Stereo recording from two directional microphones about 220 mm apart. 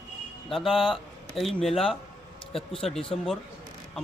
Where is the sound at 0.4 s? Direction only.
Centre (ahead or behind).